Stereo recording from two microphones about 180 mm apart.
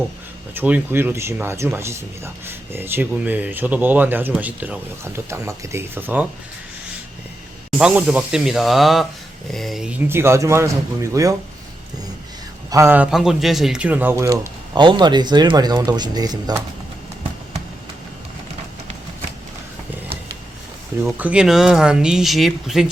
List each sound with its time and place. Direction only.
0.5 s speech: 10° right (ahead or behind)
7.8 s speech: 5° right (ahead or behind)
12.7 s speech: 10° right (ahead or behind)
21.0 s speech: 5° right (ahead or behind)